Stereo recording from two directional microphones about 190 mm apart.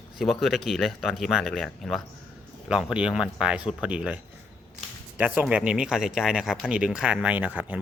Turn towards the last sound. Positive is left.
turn(degrees=-10)  # may be behind; listen again after turning